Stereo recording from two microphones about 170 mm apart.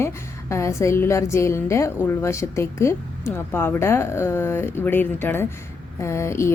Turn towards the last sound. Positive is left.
turn(degrees=15)  # may be behind; listen again after turning